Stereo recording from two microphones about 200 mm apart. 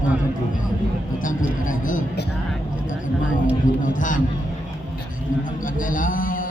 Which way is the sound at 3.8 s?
40° left (ahead or behind).